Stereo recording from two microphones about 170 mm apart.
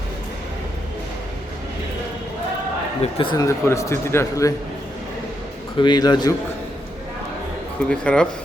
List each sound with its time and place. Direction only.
3.0 s a man's voice: 30° left (ahead or behind)
5.7 s speech: 25° left (ahead or behind)
7.9 s speech: 5° left (ahead or behind)